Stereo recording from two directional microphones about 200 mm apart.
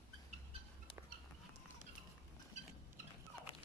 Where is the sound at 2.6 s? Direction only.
35° right (ahead or behind).